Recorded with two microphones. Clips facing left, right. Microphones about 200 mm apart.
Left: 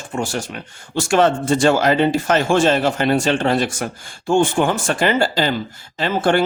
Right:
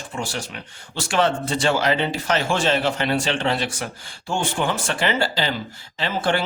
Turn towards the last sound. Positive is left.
turn(degrees=45)  # may be behind; listen again after turning